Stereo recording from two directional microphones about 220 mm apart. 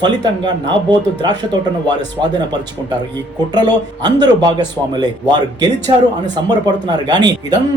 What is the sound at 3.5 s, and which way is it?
Speech, 20° right (ahead or behind).